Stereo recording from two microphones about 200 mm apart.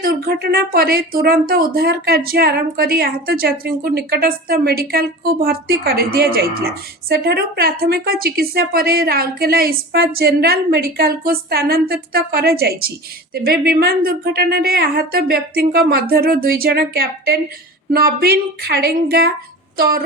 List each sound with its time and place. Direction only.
0.0 s speech: 50° right (ahead or behind)